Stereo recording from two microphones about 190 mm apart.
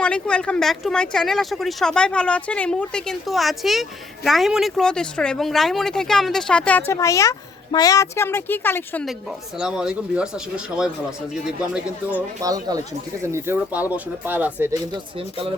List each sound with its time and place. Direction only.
0.0 s speech: 5° left (ahead or behind)
9.6 s speech: 5° right (ahead or behind)
12.4 s speech: 20° right (ahead or behind)
14.9 s speech: 30° right (ahead or behind)